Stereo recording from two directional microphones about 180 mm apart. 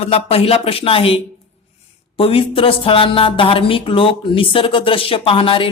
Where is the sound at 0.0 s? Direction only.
35° left (ahead or behind).